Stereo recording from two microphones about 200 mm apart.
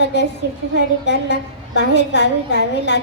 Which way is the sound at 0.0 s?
60° left (ahead or behind).